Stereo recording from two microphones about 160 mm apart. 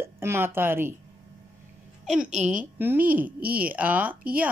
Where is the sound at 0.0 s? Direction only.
15° right (ahead or behind).